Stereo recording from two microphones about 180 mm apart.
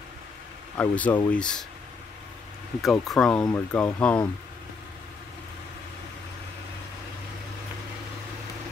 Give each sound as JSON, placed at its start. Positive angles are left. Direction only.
{"t": 0.7, "sound": "speech", "side_deg": 10}
{"t": 2.8, "sound": "speech", "side_deg": 0}